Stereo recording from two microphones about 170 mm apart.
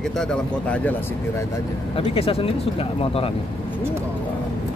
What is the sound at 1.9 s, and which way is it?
Speech, 35° left (ahead or behind).